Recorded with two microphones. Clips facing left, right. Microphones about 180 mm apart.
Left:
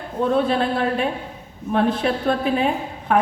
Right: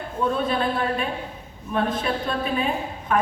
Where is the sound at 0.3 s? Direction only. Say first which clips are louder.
Left 6 dB; 70° left (ahead or behind).